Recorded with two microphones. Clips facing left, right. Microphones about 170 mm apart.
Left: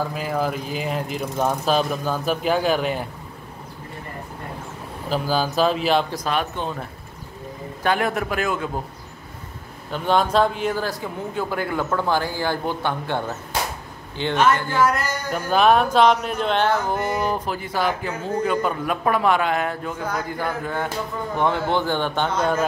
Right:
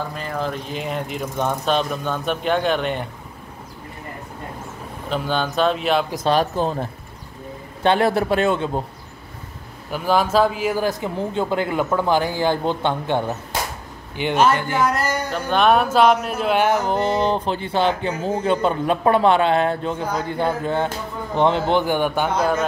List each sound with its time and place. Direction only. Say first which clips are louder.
0.1 s speech: left 2 dB; 5° left (ahead or behind)
5.1 s speech: even; 5° left (ahead or behind)
6.1 s speech: right 6 dB; 30° right (ahead or behind)
9.8 s speech: right 1 dB; 5° right (ahead or behind)
10.8 s a man's voice: right 5 dB; 20° right (ahead or behind)
15.3 s a man's voice: even; centre (ahead or behind)